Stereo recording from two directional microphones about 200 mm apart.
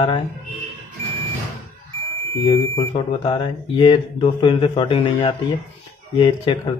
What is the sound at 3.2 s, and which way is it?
Speech, 25° left (ahead or behind).